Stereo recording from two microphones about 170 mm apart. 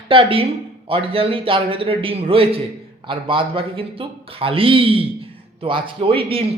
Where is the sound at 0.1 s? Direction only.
30° right (ahead or behind).